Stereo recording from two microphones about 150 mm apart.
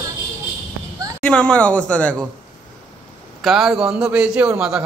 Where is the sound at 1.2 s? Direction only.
5° left (ahead or behind).